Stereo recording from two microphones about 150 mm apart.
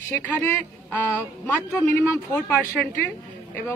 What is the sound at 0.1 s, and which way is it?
A woman's voice, 10° left (ahead or behind).